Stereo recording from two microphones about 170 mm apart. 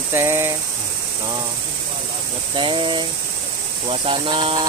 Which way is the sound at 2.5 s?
30° right (ahead or behind).